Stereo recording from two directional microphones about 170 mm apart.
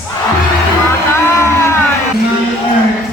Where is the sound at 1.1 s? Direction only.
15° left (ahead or behind).